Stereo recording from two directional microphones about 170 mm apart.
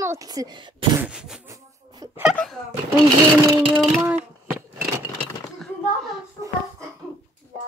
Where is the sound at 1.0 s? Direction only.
5° right (ahead or behind).